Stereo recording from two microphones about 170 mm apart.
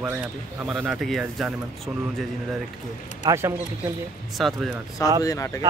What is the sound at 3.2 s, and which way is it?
Speech, 15° right (ahead or behind).